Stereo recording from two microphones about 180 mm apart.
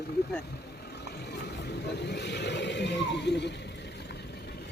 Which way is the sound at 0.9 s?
65° left (ahead or behind).